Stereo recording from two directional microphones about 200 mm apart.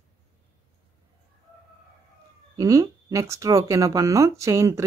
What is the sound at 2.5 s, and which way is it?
Speech, 15° right (ahead or behind).